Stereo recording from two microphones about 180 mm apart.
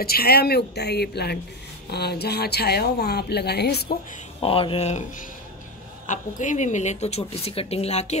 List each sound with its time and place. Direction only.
0.0 s speech: 60° left (ahead or behind)
4.4 s speech: 30° left (ahead or behind)
6.0 s speech: 45° left (ahead or behind)